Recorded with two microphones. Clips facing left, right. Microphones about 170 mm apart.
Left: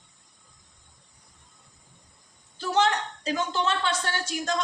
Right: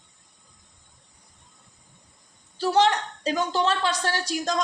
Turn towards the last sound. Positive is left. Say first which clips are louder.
# right 3 dB
turn(degrees=-35)  # may be behind; listen again after turning